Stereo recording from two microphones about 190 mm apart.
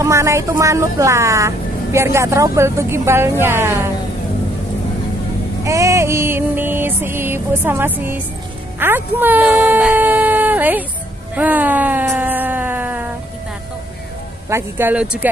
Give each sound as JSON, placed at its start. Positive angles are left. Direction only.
{"t": 0.0, "sound": "speech", "side_deg": -15}
{"t": 5.6, "sound": "music", "side_deg": -15}
{"t": 8.7, "sound": "speech", "side_deg": -10}
{"t": 11.3, "sound": "a sound", "side_deg": -10}
{"t": 14.5, "sound": "speech", "side_deg": -10}